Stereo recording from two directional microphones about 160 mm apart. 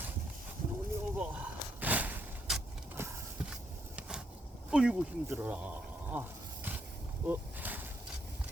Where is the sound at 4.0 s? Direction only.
5° right (ahead or behind).